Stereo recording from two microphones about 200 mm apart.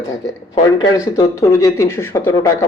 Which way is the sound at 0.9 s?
15° left (ahead or behind).